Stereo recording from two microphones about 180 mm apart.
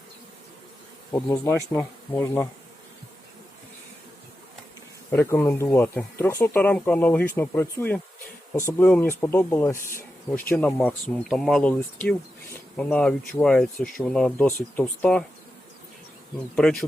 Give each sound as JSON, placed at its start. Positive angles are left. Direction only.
{"t": 1.7, "sound": "speech", "side_deg": 10}
{"t": 5.1, "sound": "speech", "side_deg": 10}
{"t": 16.6, "sound": "speech", "side_deg": 5}